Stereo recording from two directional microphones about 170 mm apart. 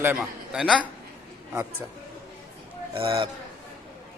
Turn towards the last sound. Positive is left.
turn(degrees=-30)  # may be behind; listen again after turning